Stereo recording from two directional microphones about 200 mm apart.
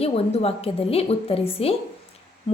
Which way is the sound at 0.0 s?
30° left (ahead or behind).